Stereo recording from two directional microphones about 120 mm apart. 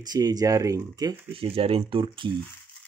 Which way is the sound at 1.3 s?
50° right (ahead or behind).